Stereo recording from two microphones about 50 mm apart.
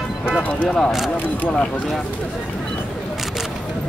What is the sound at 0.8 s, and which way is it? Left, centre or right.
Speech, centre.